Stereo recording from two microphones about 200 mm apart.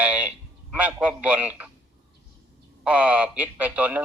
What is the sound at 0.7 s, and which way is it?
Speech, 5° right (ahead or behind).